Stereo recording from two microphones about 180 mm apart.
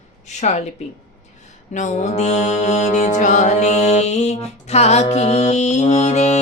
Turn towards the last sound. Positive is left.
turn(degrees=40)  # may be behind; listen again after turning